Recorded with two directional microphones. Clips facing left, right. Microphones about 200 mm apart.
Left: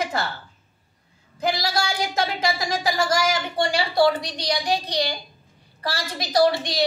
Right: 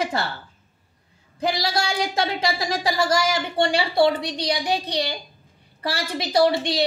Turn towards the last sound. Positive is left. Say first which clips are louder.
# right 1 dB
turn(degrees=-25)  # may be behind; listen again after turning